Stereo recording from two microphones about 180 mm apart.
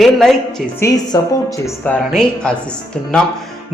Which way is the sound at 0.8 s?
20° left (ahead or behind).